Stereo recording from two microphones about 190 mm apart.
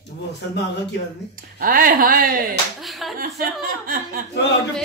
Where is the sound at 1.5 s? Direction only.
50° right (ahead or behind).